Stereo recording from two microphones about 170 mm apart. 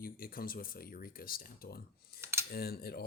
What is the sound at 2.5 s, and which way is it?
Speech, 65° left (ahead or behind).